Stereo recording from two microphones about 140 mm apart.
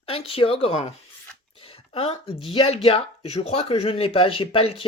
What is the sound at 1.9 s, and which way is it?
Speech, 40° left (ahead or behind).